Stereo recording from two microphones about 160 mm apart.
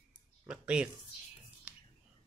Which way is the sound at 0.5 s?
5° right (ahead or behind).